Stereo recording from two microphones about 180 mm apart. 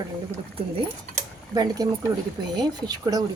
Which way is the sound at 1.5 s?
20° right (ahead or behind).